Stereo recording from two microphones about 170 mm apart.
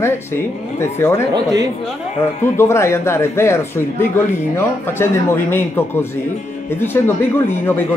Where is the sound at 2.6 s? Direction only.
15° left (ahead or behind).